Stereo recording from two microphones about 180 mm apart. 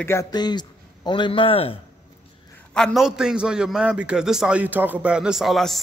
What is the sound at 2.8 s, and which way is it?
A man's voice, centre (ahead or behind).